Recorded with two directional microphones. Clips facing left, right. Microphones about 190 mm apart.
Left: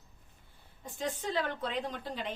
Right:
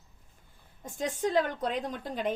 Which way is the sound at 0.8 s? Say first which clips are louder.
Right 5 dB; 45° right (ahead or behind).